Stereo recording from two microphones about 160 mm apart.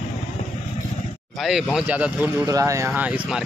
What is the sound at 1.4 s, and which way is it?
Speech, centre (ahead or behind).